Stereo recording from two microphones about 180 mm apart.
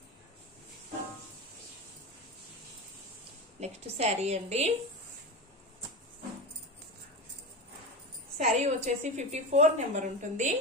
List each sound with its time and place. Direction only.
3.6 s a woman's voice: 35° right (ahead or behind)
8.4 s a woman's voice: 40° right (ahead or behind)